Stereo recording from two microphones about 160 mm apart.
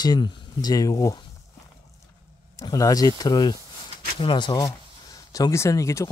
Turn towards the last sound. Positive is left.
turn(degrees=20)  # may be behind; listen again after turning